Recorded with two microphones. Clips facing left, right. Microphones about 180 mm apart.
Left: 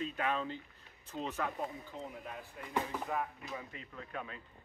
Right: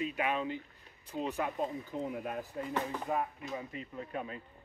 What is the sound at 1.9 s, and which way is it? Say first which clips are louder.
Speech: right 8 dB; 60° right (ahead or behind).